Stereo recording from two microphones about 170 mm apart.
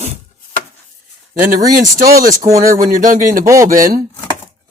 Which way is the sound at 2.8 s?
55° right (ahead or behind).